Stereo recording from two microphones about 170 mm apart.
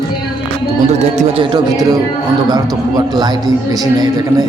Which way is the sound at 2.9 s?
25° right (ahead or behind).